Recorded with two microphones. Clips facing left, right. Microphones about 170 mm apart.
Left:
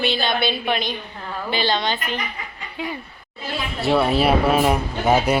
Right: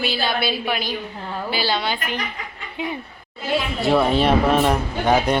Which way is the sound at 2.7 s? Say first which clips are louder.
Right 2 dB; 20° right (ahead or behind).